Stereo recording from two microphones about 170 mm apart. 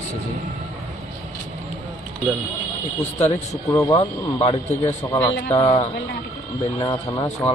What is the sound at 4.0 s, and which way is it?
Speech, 35° left (ahead or behind).